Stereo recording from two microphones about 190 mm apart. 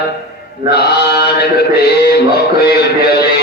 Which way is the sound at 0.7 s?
60° left (ahead or behind).